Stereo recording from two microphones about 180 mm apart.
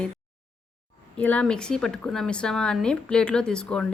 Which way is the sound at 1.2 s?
5° left (ahead or behind).